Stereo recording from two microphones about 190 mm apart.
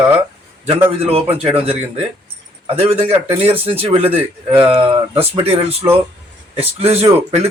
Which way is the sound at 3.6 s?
30° right (ahead or behind).